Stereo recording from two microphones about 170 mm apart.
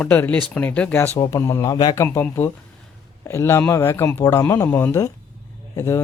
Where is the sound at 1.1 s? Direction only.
20° left (ahead or behind).